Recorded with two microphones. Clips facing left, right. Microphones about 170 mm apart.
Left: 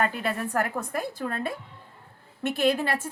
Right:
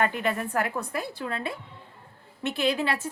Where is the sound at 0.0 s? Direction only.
35° left (ahead or behind).